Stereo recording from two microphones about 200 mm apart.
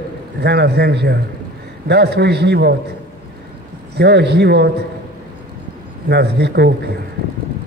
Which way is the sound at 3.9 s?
55° right (ahead or behind).